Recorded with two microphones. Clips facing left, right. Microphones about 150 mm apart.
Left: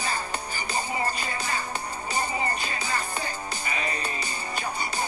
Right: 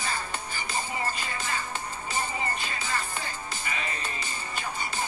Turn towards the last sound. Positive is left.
turn(degrees=40)  # may be behind; listen again after turning